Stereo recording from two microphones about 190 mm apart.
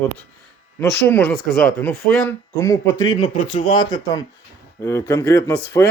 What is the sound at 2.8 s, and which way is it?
Speech, 80° left.